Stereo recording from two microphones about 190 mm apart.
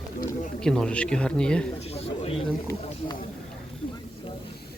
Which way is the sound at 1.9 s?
30° left (ahead or behind).